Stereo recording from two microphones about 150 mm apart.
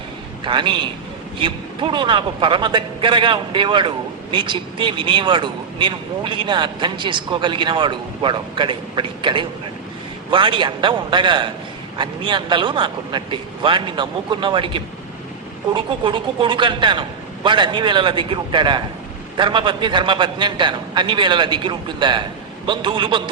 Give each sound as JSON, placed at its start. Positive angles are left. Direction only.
{"t": 0.4, "sound": "a man's voice", "side_deg": -35}